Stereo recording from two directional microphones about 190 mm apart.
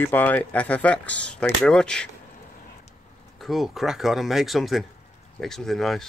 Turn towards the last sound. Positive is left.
turn(degrees=0)  # may be behind; listen again after turning